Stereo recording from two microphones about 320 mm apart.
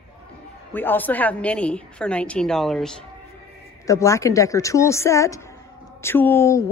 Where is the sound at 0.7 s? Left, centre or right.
Centre.